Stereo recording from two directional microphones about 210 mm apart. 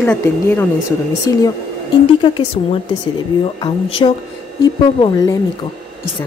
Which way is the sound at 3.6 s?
25° left (ahead or behind).